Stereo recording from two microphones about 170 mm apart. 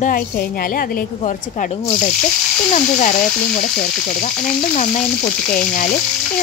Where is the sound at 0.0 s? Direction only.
60° left (ahead or behind).